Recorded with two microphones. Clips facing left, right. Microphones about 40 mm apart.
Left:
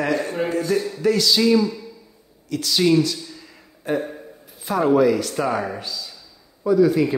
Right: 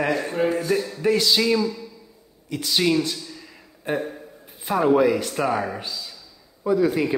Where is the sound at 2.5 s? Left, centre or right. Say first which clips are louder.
Left 3 dB; centre.